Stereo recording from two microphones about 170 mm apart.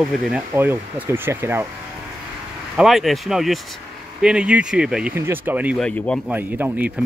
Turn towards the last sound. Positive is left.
turn(degrees=-10)  # may be behind; listen again after turning